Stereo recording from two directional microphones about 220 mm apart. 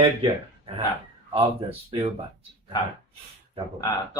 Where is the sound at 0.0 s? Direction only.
25° right (ahead or behind).